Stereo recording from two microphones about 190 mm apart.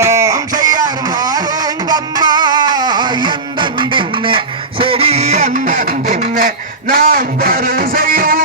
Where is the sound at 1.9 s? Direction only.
20° right (ahead or behind).